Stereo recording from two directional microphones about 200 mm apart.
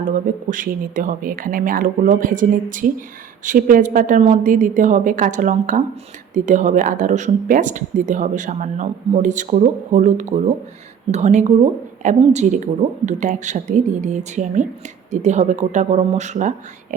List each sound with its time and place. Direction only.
0.5 s speech: 40° right (ahead or behind)